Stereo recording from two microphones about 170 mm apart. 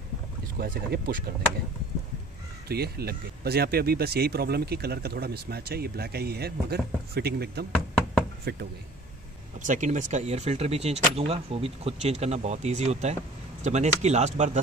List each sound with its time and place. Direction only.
0.6 s speech: 60° right (ahead or behind)
2.7 s speech: 70° right (ahead or behind)
9.6 s speech: 50° right (ahead or behind)